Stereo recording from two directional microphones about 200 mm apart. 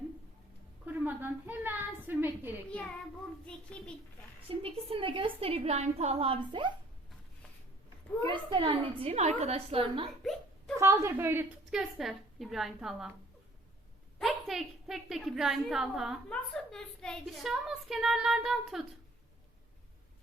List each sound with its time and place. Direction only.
0.9 s a sound: 10° right (ahead or behind)
3.4 s a child's voice: 5° left (ahead or behind)
4.4 s a woman's voice: 25° right (ahead or behind)
8.2 s a woman's voice: 25° right (ahead or behind)
10.8 s a woman's voice: 15° right (ahead or behind)
11.8 s a woman's voice: centre (ahead or behind)
14.2 s a woman's voice: centre (ahead or behind)